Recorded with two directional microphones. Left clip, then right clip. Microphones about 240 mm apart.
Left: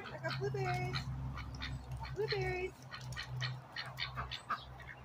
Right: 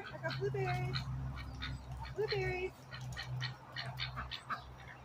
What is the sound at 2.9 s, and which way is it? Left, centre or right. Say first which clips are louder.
Duck: left 1 dB; centre.